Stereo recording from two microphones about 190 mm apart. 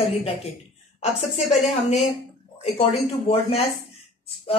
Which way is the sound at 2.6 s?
30° left (ahead or behind).